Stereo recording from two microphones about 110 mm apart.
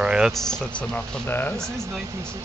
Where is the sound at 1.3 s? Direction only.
20° left (ahead or behind).